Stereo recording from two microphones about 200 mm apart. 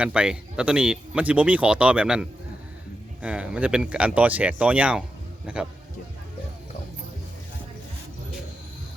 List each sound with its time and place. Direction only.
0.0 s speech: 5° right (ahead or behind)